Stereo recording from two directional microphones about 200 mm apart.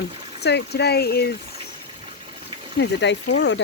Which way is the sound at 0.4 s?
55° left (ahead or behind).